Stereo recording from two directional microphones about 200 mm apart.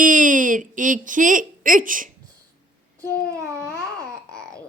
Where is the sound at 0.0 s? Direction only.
40° right (ahead or behind).